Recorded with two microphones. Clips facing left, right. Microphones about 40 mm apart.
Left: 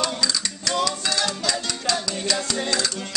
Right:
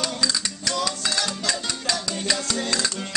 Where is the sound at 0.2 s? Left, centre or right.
Centre.